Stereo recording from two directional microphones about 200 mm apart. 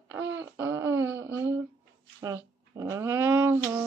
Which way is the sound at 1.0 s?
10° right (ahead or behind).